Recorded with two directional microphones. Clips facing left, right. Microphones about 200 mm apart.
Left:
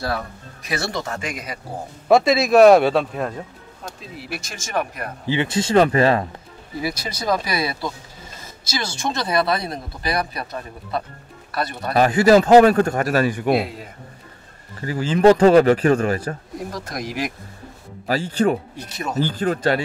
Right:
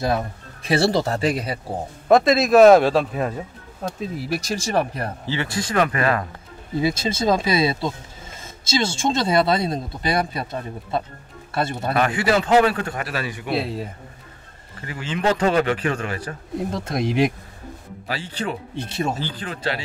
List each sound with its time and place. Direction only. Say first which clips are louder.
0.0 s speech: right 3 dB; 20° right (ahead or behind)
2.0 s speech: even; centre (ahead or behind)
4.2 s speech: right 6 dB; 40° right (ahead or behind)
5.2 s speech: left 7 dB; 20° left (ahead or behind)
6.8 s speech: right 5 dB; 25° right (ahead or behind)
11.9 s a man's voice: left 7 dB; 35° left (ahead or behind)
13.6 s speech: even; 30° right (ahead or behind)
14.8 s a man's voice: left 9 dB; 35° left (ahead or behind)
16.7 s speech: right 7 dB; 25° right (ahead or behind)
18.0 s a man's voice: left 9 dB; 45° left (ahead or behind)
18.8 s speech: right 4 dB; 30° right (ahead or behind)
19.1 s a man's voice: left 9 dB; 45° left (ahead or behind)